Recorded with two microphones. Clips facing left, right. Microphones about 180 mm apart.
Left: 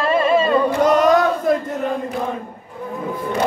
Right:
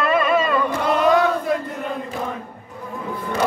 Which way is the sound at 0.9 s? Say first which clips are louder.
Even; 45° left (ahead or behind).